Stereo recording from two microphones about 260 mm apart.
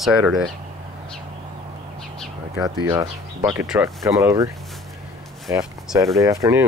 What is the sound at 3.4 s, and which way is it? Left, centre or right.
Speech, centre.